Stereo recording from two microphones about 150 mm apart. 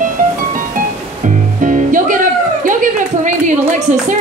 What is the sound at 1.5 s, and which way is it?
Music, 60° right (ahead or behind).